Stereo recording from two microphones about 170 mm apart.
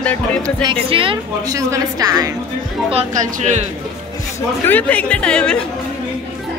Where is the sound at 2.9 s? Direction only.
45° right (ahead or behind).